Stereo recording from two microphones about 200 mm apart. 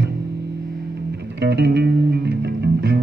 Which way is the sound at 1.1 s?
55° right (ahead or behind).